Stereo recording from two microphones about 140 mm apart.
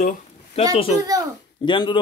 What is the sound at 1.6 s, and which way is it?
Speech, 35° left (ahead or behind).